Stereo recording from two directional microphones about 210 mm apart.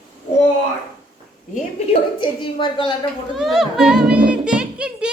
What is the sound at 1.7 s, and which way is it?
A woman's voice, 25° left (ahead or behind).